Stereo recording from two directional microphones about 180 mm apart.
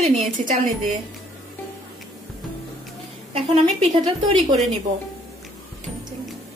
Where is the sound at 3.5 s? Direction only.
30° right (ahead or behind).